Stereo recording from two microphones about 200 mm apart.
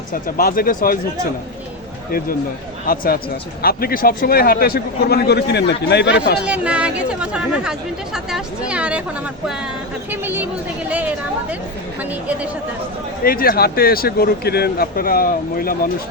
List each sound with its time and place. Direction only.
0.1 s speech: 45° left (ahead or behind)
2.8 s speech: 45° left (ahead or behind)
6.4 s speech: 5° right (ahead or behind)
13.2 s speech: 50° left (ahead or behind)